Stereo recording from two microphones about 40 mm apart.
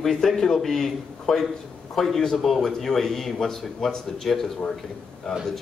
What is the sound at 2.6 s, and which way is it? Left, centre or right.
A man's voice, centre.